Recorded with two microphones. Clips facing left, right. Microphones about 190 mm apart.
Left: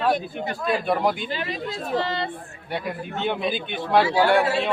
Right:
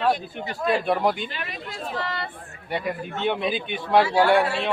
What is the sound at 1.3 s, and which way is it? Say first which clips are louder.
Speech: left 6 dB; 30° left (ahead or behind).